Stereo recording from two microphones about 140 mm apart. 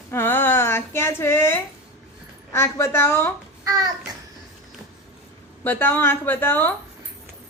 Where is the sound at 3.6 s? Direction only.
25° right (ahead or behind).